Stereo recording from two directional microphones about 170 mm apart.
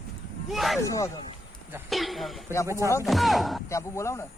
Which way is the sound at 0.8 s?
20° left (ahead or behind).